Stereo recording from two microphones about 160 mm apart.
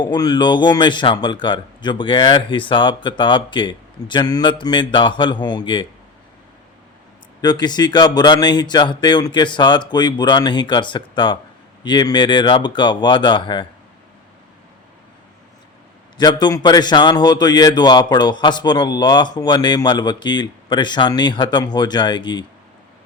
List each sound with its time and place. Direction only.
0.0 s a man's voice: 25° left (ahead or behind)
7.4 s a man's voice: 25° left (ahead or behind)
16.1 s a man's voice: 25° left (ahead or behind)